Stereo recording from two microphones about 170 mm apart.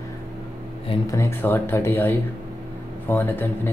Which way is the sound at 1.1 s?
15° left (ahead or behind).